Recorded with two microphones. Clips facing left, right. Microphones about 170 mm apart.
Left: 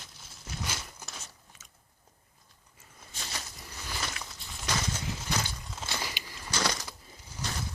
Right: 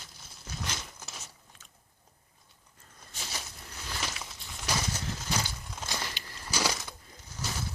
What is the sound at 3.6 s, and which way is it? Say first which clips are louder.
Biting: even; centre (ahead or behind).